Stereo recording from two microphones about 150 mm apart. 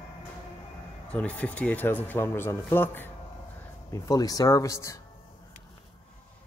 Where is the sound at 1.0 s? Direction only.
10° left (ahead or behind).